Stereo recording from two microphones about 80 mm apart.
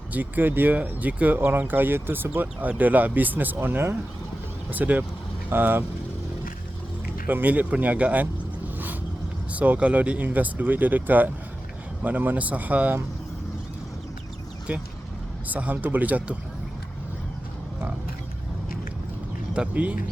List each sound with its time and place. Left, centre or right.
0.1 s speech: right
7.3 s speech: centre
9.5 s speech: centre
14.7 s speech: centre
19.5 s speech: centre